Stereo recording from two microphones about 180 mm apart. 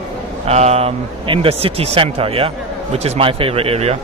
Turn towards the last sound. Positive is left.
turn(degrees=-35)  # may be behind; listen again after turning